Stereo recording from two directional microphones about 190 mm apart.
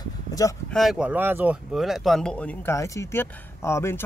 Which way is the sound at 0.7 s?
Centre (ahead or behind).